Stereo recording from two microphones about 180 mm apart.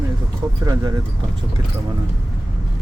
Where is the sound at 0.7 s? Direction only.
25° right (ahead or behind).